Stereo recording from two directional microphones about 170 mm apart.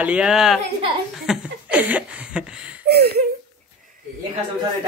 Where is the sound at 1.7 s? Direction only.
10° right (ahead or behind).